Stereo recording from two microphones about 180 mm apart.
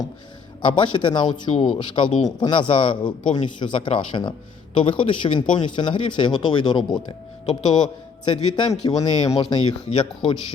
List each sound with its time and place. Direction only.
0.6 s speech: 25° left (ahead or behind)